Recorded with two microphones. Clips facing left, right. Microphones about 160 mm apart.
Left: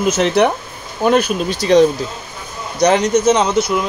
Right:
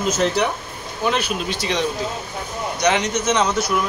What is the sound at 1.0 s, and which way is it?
Speech, 45° left (ahead or behind).